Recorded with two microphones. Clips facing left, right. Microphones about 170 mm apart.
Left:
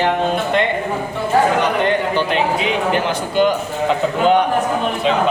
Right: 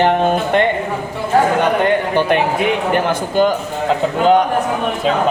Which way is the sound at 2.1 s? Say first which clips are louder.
Right 3 dB; 55° right (ahead or behind).